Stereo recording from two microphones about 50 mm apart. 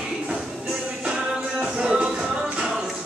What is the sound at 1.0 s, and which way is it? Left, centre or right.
Music, right.